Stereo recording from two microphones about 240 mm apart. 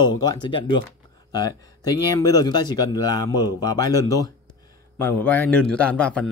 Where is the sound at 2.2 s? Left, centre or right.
Centre.